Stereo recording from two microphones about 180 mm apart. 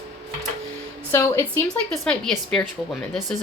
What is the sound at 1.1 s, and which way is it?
Speech, 15° left (ahead or behind).